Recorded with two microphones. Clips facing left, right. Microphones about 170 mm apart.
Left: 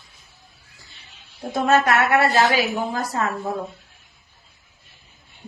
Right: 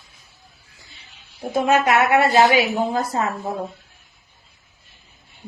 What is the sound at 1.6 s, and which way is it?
Speech, 10° right (ahead or behind).